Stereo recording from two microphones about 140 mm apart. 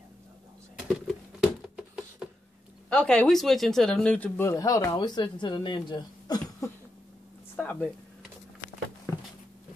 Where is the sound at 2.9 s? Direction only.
5° left (ahead or behind); by 6.4 s 35° left (ahead or behind).